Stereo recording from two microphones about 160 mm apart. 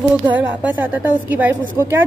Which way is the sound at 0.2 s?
10° right (ahead or behind).